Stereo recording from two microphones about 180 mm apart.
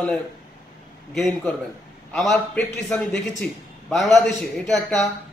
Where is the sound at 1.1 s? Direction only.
Centre (ahead or behind).